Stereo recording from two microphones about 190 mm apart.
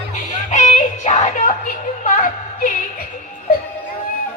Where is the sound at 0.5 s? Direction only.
40° left (ahead or behind).